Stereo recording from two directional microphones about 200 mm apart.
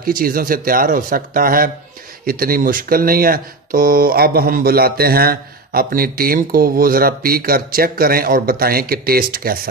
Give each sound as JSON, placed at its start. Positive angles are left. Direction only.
{"t": 0.0, "sound": "speech", "side_deg": -45}